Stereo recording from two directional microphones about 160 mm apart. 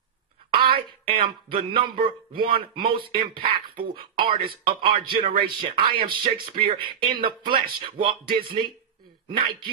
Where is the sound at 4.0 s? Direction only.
30° right (ahead or behind).